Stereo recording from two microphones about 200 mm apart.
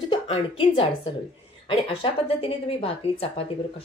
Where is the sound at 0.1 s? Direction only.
25° left (ahead or behind).